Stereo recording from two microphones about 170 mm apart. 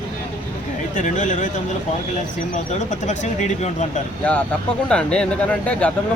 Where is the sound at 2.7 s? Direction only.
45° left (ahead or behind).